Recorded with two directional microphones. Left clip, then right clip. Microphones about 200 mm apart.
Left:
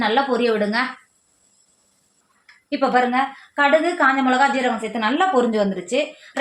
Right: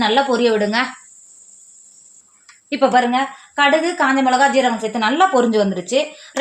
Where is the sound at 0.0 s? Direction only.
45° right (ahead or behind).